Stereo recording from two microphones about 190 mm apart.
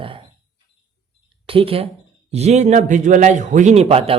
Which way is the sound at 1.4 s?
30° right (ahead or behind).